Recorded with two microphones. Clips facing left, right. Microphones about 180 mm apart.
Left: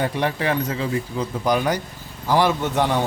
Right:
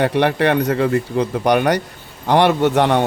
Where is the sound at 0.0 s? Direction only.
70° right (ahead or behind).